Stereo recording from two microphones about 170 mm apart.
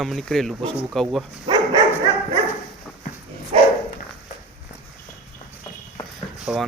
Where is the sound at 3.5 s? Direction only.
35° right (ahead or behind).